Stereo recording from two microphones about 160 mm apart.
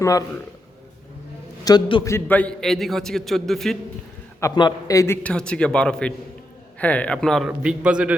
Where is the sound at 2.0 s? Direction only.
15° left (ahead or behind).